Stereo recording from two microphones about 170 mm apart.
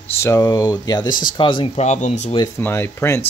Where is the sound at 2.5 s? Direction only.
15° left (ahead or behind).